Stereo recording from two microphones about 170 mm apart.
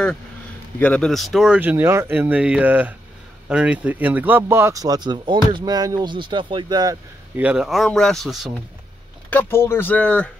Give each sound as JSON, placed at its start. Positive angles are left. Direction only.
{"t": 0.7, "sound": "speech", "side_deg": 10}
{"t": 7.3, "sound": "speech", "side_deg": -5}
{"t": 9.3, "sound": "speech", "side_deg": 10}